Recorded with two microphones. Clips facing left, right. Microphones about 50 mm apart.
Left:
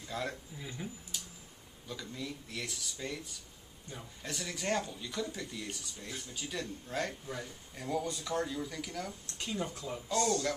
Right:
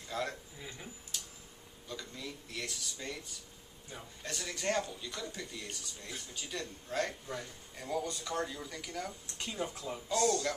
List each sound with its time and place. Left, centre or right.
0.1 s speech: centre
9.4 s speech: centre